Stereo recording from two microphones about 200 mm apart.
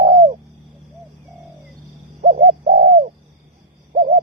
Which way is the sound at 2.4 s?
50° right (ahead or behind).